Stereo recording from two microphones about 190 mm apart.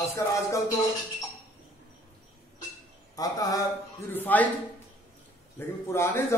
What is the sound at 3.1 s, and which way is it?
Speech, 20° left (ahead or behind).